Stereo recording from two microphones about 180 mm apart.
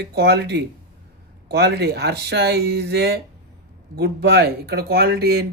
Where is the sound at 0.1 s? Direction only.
65° right (ahead or behind).